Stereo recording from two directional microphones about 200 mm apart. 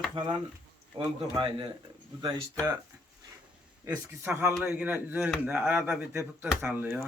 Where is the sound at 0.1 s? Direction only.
25° right (ahead or behind).